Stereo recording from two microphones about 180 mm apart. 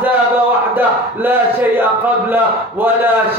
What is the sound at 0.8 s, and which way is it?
A man's voice, 10° right (ahead or behind).